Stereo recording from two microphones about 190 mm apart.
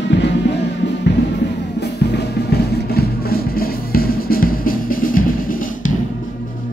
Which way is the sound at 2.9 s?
50° left (ahead or behind).